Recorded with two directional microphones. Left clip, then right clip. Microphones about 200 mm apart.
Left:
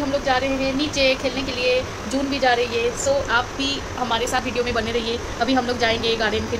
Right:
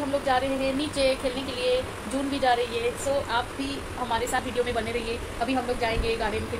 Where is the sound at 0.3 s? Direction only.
5° left (ahead or behind).